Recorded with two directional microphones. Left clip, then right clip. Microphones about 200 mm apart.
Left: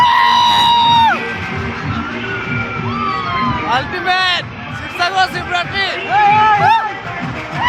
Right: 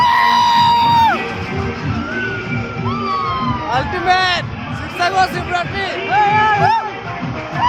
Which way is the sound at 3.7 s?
5° left (ahead or behind).